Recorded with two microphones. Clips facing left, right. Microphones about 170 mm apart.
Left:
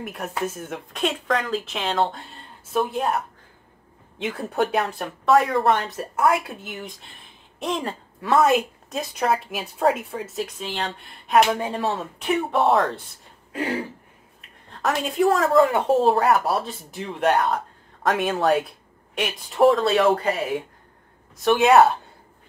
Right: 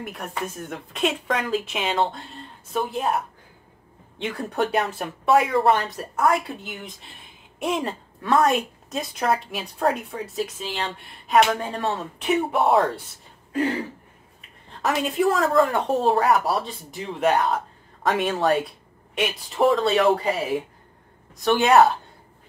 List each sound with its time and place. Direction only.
0.0 s a woman's voice: centre (ahead or behind)
4.2 s a woman's voice: centre (ahead or behind)
14.7 s a woman's voice: centre (ahead or behind)